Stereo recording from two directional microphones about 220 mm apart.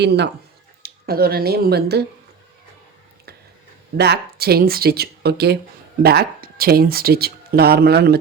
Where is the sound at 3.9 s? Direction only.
50° right (ahead or behind).